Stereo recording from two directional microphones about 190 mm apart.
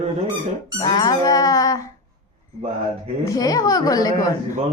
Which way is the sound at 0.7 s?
20° left (ahead or behind).